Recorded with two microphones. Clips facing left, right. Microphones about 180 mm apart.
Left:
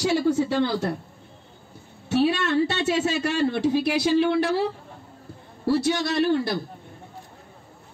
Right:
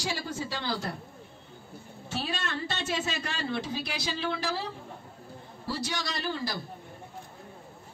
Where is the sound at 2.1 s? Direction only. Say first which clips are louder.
Left 13 dB; 65° left (ahead or behind).